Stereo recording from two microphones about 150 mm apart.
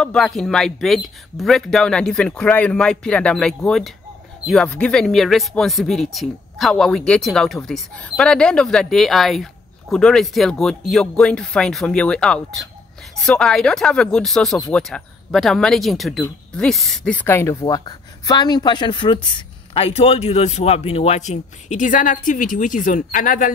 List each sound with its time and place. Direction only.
0.0 s speech: 5° left (ahead or behind); by 23.5 s 65° left (ahead or behind)